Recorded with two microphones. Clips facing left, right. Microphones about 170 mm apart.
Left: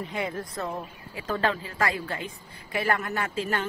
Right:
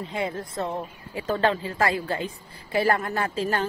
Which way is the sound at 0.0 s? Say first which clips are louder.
Right 2 dB; 30° right (ahead or behind).